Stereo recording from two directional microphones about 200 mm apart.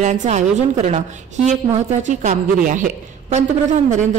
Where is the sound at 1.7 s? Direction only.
35° right (ahead or behind).